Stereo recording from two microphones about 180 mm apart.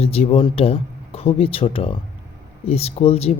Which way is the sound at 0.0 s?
35° left (ahead or behind).